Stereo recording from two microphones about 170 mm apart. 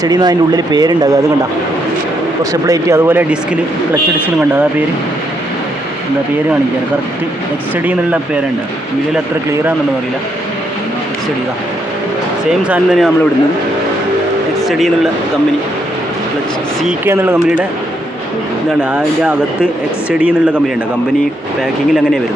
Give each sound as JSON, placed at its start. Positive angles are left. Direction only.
{"t": 0.0, "sound": "speech", "side_deg": -25}
{"t": 2.4, "sound": "speech", "side_deg": -20}
{"t": 12.5, "sound": "speech", "side_deg": -5}
{"t": 14.7, "sound": "speech", "side_deg": 0}
{"t": 17.1, "sound": "speech", "side_deg": -15}
{"t": 18.8, "sound": "speech", "side_deg": -5}